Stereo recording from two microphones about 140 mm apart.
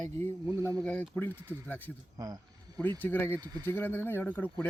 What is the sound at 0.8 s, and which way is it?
Speech, 10° left (ahead or behind).